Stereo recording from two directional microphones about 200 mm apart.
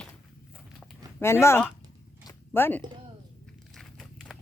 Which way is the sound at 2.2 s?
15° left (ahead or behind).